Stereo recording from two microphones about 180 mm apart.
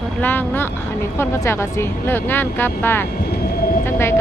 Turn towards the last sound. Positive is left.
turn(degrees=15)  # may be behind; listen again after turning